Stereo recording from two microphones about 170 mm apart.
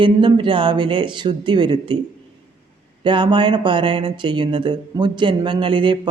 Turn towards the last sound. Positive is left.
turn(degrees=-30)  # may be behind; listen again after turning